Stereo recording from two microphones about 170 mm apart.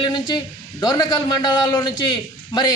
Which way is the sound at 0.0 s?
25° left (ahead or behind).